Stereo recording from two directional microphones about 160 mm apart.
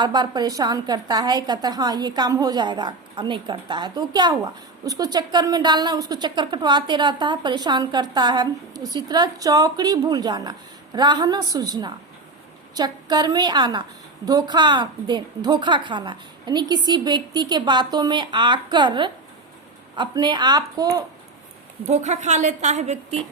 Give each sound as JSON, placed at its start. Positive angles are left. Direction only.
{"t": 0.0, "sound": "a woman's voice", "side_deg": -25}
{"t": 21.8, "sound": "a woman's voice", "side_deg": -45}